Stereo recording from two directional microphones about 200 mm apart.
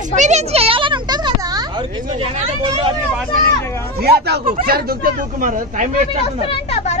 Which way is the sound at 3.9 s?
50° right (ahead or behind).